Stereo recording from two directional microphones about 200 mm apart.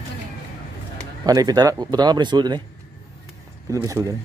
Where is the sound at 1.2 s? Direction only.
20° right (ahead or behind).